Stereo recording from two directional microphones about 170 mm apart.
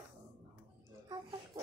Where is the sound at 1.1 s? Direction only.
25° right (ahead or behind).